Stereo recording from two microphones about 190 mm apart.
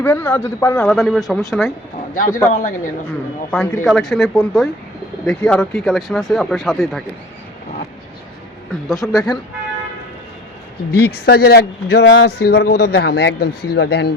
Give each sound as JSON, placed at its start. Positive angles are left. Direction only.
{"t": 0.0, "sound": "speech", "side_deg": 10}
{"t": 2.1, "sound": "speech", "side_deg": 45}
{"t": 3.5, "sound": "speech", "side_deg": 5}
{"t": 9.0, "sound": "speech", "side_deg": 20}
{"t": 10.9, "sound": "speech", "side_deg": 55}